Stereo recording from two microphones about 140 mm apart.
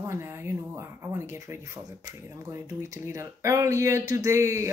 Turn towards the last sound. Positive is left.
turn(degrees=-20)  # may be behind; listen again after turning